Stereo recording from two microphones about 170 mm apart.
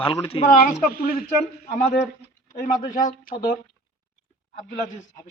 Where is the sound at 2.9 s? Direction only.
50° left (ahead or behind).